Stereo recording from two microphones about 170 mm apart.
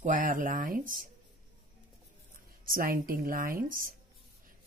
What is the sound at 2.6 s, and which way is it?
A woman's voice, 55° right (ahead or behind).